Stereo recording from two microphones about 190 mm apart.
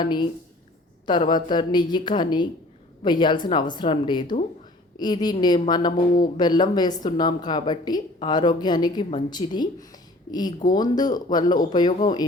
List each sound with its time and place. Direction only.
0.0 s a woman's voice: 25° left (ahead or behind)